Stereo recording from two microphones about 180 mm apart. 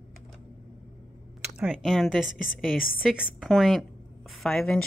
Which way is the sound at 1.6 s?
Centre (ahead or behind).